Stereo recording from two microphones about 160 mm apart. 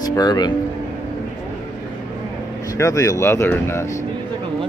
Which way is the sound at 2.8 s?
20° left (ahead or behind).